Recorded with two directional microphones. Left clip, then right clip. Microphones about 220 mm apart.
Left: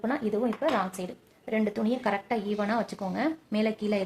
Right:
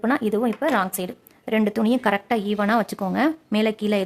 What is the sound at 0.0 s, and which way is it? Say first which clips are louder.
A woman's voice: right 7 dB; 45° right (ahead or behind).